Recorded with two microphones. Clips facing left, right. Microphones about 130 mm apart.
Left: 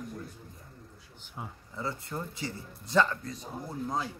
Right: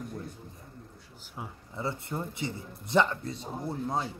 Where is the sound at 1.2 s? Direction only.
Centre (ahead or behind).